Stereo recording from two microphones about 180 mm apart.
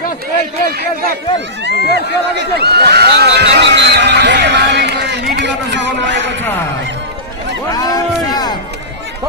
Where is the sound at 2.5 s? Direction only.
65° right (ahead or behind); by 6.3 s 80° right.